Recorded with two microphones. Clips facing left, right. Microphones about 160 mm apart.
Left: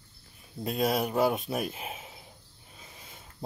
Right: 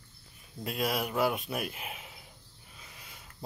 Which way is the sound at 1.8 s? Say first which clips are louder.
Left 3 dB; 30° left (ahead or behind).